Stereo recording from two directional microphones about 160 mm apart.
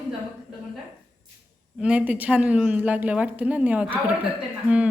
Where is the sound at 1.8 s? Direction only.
5° right (ahead or behind).